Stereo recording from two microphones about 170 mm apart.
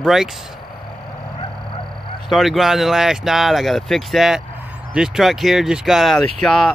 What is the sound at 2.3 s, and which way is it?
Speech, centre (ahead or behind).